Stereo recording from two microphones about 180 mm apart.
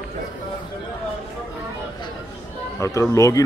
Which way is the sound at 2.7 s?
15° left (ahead or behind).